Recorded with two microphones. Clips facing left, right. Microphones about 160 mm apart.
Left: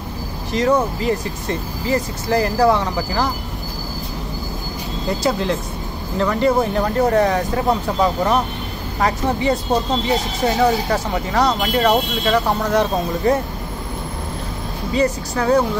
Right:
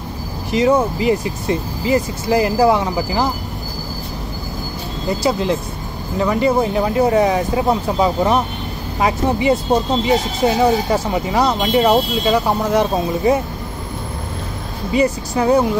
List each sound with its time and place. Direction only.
0.5 s speech: 10° right (ahead or behind)
6.1 s speech: 10° right (ahead or behind)
11.5 s speech: 25° right (ahead or behind)
11.8 s speech: 10° right (ahead or behind)
15.0 s speech: 15° right (ahead or behind)